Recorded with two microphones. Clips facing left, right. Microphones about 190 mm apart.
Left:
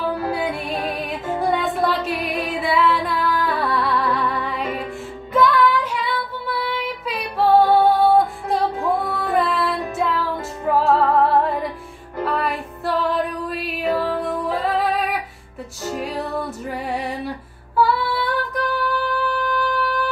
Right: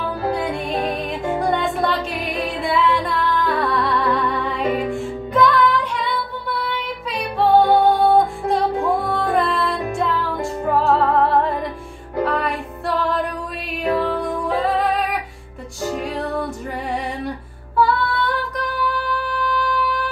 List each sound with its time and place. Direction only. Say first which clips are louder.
1.5 s music: left 2 dB; centre (ahead or behind)
17.7 s female singing: right 1 dB; centre (ahead or behind)